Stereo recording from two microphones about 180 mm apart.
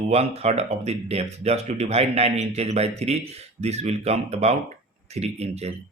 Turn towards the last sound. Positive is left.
turn(degrees=-35)  # may be behind; listen again after turning